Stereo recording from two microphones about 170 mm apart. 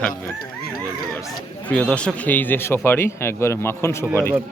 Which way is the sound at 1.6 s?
5° left (ahead or behind).